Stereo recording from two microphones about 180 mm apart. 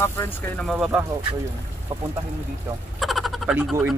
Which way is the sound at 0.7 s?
5° right (ahead or behind).